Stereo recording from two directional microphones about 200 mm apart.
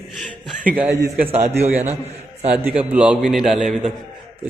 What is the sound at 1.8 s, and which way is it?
Speech, 35° right (ahead or behind).